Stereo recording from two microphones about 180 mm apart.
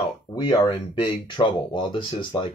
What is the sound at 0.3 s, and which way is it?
Speech, 25° left (ahead or behind).